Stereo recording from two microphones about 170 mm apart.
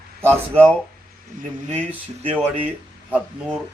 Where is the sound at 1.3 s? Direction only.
50° right (ahead or behind).